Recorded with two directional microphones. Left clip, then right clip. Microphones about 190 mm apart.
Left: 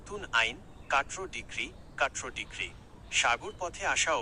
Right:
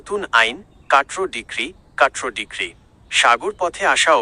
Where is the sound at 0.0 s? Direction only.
45° right (ahead or behind).